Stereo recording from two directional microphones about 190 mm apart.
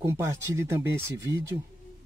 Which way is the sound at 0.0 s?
15° right (ahead or behind).